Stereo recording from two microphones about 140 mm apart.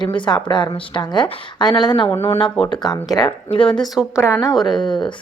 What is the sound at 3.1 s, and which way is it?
Speech, 35° left (ahead or behind).